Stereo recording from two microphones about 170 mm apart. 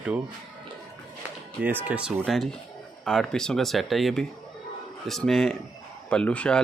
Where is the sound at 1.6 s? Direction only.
10° right (ahead or behind).